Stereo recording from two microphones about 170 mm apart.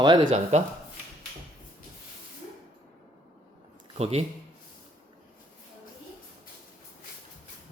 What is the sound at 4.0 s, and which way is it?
Speech, 35° right (ahead or behind).